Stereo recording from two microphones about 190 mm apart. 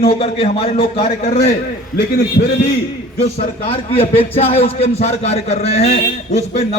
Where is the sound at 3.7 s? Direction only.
30° left (ahead or behind).